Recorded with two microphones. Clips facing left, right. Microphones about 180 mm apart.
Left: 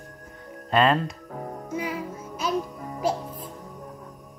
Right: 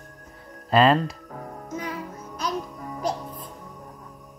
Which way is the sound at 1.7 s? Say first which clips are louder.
Left 2 dB; 10° left (ahead or behind).